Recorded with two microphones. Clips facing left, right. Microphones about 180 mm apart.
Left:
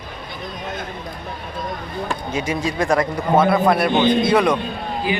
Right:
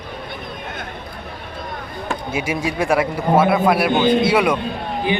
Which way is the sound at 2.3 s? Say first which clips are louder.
Right 1 dB; 10° right (ahead or behind).